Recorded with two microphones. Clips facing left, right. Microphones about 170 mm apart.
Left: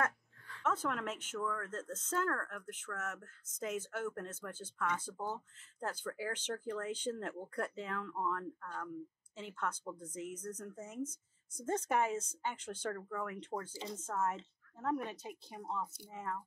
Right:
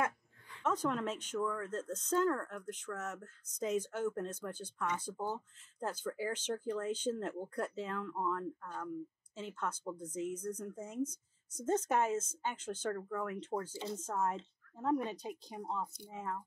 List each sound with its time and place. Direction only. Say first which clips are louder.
0.0 s speech: right 1 dB; 15° right (ahead or behind)